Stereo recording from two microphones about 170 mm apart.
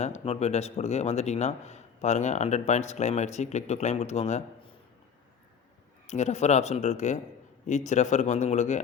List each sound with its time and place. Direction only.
0.0 s speech: 40° left (ahead or behind)
6.1 s speech: 40° left (ahead or behind)